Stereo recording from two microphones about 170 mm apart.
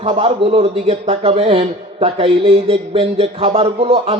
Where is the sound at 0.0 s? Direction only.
35° right (ahead or behind).